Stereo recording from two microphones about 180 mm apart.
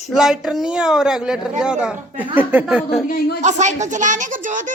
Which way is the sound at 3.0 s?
50° left (ahead or behind).